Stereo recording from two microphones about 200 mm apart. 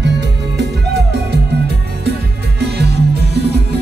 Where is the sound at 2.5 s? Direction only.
55° right (ahead or behind).